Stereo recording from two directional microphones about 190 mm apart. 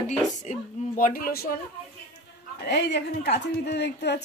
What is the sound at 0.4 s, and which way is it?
Speech, 45° left (ahead or behind).